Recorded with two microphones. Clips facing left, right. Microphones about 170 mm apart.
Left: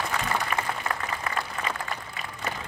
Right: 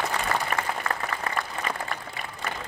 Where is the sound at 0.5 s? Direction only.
40° right (ahead or behind).